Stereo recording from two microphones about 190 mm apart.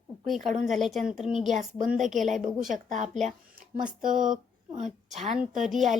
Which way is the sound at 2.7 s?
40° right (ahead or behind).